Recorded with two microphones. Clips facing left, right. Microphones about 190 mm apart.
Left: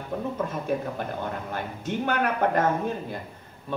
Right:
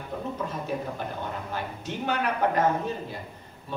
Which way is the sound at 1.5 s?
55° left (ahead or behind).